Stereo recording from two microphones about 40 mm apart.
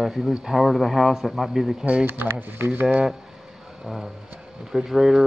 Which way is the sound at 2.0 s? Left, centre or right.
Right.